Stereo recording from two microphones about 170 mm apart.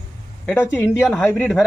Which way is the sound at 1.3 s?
Centre (ahead or behind).